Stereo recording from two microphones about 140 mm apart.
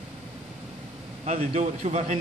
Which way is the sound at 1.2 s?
55° right (ahead or behind).